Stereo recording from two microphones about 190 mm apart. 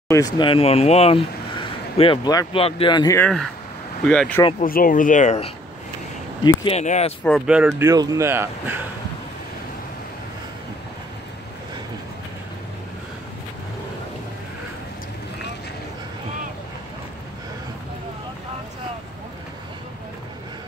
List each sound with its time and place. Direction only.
0.1 s speech: 20° left (ahead or behind)
4.0 s speech: 5° left (ahead or behind)
4.6 s speech: 50° left (ahead or behind)
6.4 s speech: 25° left (ahead or behind)
6.8 s speech: 35° left (ahead or behind)
7.2 s speech: centre (ahead or behind)
7.8 s speech: 20° right (ahead or behind)